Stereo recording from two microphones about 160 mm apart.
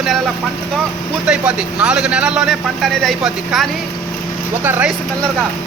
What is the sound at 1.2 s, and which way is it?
A man's voice, 5° right (ahead or behind).